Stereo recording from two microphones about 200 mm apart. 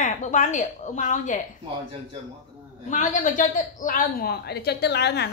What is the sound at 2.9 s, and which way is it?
A woman's voice, 40° left (ahead or behind).